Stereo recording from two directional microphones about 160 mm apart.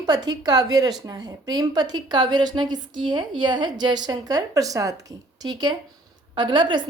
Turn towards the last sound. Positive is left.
turn(degrees=-30)  # may be behind; listen again after turning